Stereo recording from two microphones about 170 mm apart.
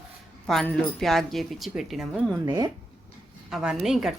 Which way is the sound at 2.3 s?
20° right (ahead or behind).